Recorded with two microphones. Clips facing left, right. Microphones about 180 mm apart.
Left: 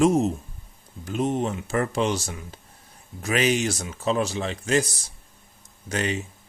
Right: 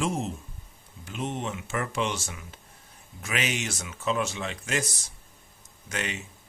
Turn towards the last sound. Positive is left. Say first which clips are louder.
# left 7 dB
turn(degrees=35)  # may be behind; listen again after turning